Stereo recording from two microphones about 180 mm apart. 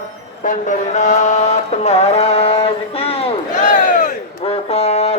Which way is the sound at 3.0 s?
35° left (ahead or behind).